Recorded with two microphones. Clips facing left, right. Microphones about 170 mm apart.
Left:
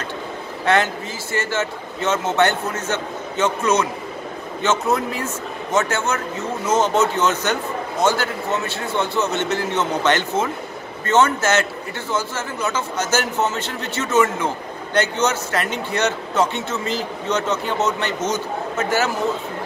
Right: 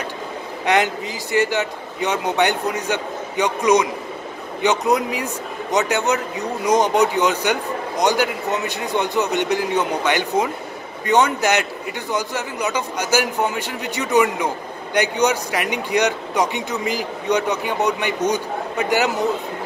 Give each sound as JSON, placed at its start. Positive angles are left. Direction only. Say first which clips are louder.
{"t": 0.7, "sound": "speech", "louder": "even", "side_deg": -15}